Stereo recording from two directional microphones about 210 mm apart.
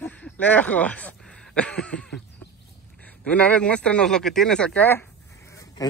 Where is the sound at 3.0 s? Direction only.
5° left (ahead or behind).